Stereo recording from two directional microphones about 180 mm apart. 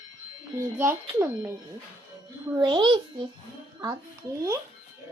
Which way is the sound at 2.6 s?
25° right (ahead or behind).